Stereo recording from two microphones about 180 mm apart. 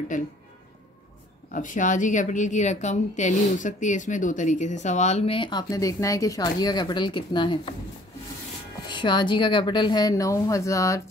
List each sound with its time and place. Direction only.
0.1 s speech: 45° left (ahead or behind)
1.5 s a woman's voice: 45° left (ahead or behind); by 7.7 s 25° left (ahead or behind)
8.8 s a woman's voice: 25° left (ahead or behind)